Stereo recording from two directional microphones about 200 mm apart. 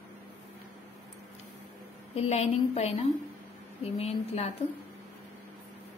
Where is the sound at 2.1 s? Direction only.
30° left (ahead or behind).